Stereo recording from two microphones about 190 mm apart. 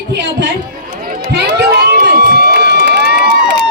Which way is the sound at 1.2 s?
55° right (ahead or behind).